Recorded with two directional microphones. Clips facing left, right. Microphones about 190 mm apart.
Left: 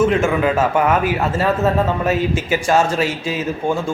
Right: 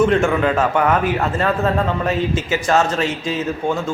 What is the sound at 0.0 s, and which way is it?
A man's voice, 5° left (ahead or behind).